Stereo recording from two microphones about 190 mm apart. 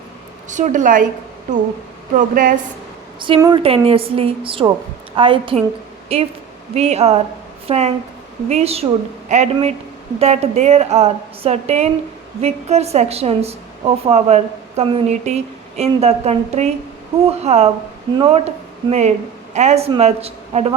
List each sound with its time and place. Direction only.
0.4 s a woman's voice: 40° right (ahead or behind)
2.1 s a woman's voice: 45° right (ahead or behind)
3.2 s a woman's voice: 25° right (ahead or behind)